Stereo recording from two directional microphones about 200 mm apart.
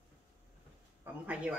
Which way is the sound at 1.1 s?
10° right (ahead or behind).